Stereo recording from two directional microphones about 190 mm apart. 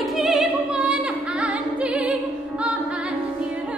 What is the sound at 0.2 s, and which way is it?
Opera, centre (ahead or behind).